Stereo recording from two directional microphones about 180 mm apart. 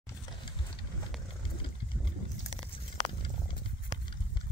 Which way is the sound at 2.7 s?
30° left (ahead or behind).